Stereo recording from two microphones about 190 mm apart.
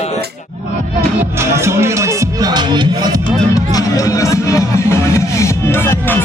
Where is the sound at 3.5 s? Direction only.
20° left (ahead or behind).